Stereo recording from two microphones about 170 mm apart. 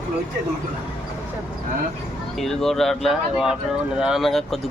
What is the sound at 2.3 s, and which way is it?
Speech, centre (ahead or behind).